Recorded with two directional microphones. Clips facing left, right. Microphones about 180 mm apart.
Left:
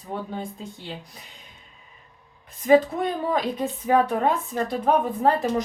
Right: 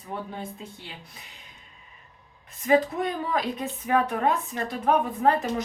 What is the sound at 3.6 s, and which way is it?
Music, 30° left (ahead or behind).